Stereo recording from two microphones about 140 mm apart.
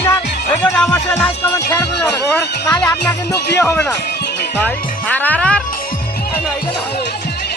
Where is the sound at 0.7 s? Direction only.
5° left (ahead or behind).